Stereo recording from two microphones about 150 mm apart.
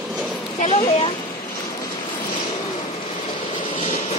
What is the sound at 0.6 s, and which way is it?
Speech, 45° left (ahead or behind).